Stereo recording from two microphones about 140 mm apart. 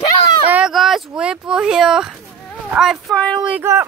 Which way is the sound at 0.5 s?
5° right (ahead or behind).